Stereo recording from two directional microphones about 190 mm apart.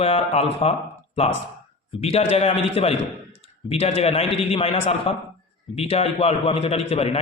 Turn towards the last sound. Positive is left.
turn(degrees=30)  # may be behind; listen again after turning